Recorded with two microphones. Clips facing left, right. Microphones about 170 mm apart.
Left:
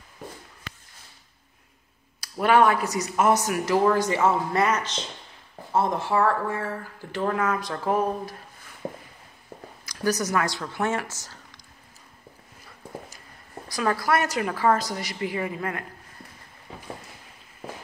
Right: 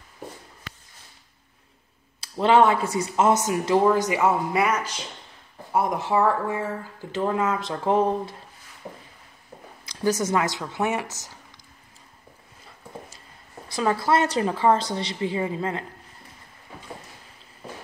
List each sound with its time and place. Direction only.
2.1 s speech: 25° right (ahead or behind)
9.8 s speech: 25° right (ahead or behind)
13.7 s speech: 25° right (ahead or behind)